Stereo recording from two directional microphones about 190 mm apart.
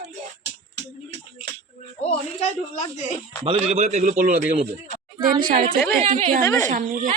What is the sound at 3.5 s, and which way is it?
A man's voice, 35° right (ahead or behind).